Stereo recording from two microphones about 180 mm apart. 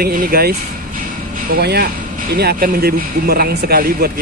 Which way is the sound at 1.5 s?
60° right (ahead or behind).